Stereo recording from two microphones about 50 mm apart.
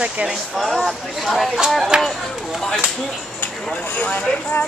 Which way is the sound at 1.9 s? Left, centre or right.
Centre.